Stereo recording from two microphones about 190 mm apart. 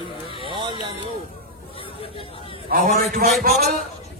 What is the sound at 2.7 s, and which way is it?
Speech, 45° right (ahead or behind).